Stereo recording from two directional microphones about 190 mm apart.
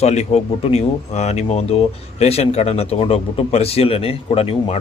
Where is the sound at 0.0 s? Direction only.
35° left (ahead or behind).